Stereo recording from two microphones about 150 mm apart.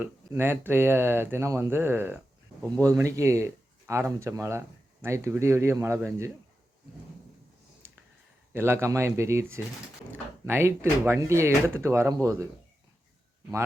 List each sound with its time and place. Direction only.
0.0 s speech: 15° right (ahead or behind)
8.5 s speech: 15° right (ahead or behind)